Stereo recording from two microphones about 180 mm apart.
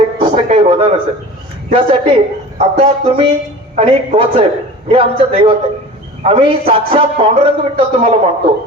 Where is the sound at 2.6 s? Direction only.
30° right (ahead or behind).